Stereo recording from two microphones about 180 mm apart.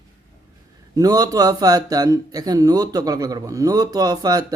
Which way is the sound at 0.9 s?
20° right (ahead or behind).